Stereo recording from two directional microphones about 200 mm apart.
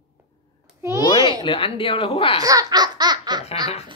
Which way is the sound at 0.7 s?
15° right (ahead or behind).